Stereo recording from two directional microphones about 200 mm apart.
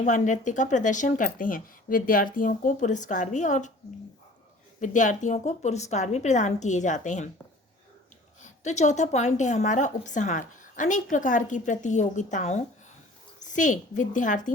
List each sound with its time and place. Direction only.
0.0 s a woman's voice: 40° left (ahead or behind)
4.8 s a woman's voice: 40° left (ahead or behind)
8.4 s a woman's voice: 35° left (ahead or behind)